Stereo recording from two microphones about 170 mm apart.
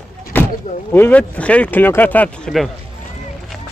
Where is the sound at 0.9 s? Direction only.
10° left (ahead or behind).